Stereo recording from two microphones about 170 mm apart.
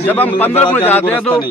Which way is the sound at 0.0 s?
10° left (ahead or behind).